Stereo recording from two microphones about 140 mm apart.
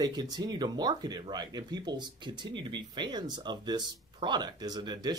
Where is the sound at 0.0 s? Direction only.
30° right (ahead or behind).